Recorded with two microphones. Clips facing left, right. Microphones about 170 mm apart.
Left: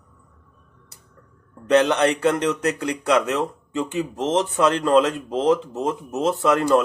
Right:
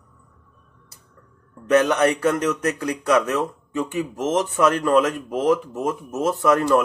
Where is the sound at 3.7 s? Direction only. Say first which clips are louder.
Even; 25° left (ahead or behind).